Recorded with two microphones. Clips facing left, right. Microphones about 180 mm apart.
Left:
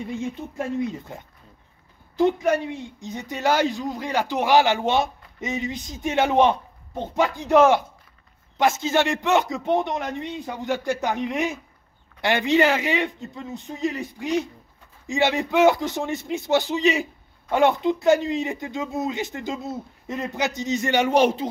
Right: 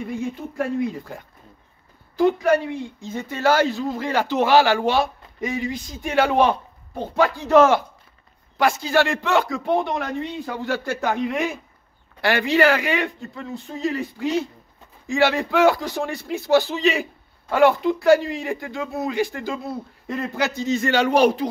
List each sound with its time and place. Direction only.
0.6 s speech: 20° left (ahead or behind)